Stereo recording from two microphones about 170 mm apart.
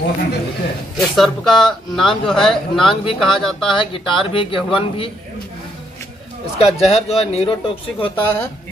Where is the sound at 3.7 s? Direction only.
30° left (ahead or behind).